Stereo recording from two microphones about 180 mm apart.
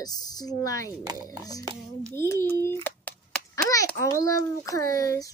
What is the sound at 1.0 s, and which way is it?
Speech, 20° right (ahead or behind).